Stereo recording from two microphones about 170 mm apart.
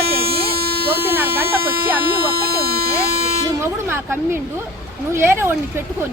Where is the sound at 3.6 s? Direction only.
15° right (ahead or behind).